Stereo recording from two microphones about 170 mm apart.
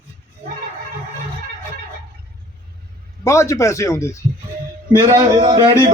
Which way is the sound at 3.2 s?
15° left (ahead or behind).